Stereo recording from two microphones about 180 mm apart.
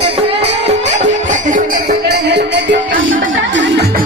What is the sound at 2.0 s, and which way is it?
Music, 70° right (ahead or behind).